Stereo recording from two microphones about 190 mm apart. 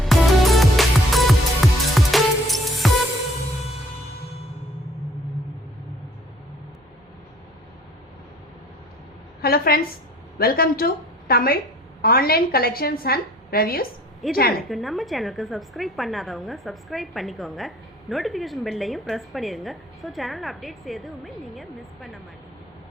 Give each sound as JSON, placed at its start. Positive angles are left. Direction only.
{"t": 0.0, "sound": "music", "side_deg": 0}
{"t": 9.4, "sound": "a sound", "side_deg": 55}
{"t": 10.3, "sound": "a woman's voice", "side_deg": 50}
{"t": 14.7, "sound": "a woman's voice", "side_deg": 0}